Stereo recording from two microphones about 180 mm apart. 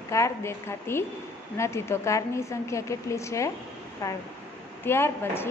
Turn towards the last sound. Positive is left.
turn(degrees=15)  # may be behind; listen again after turning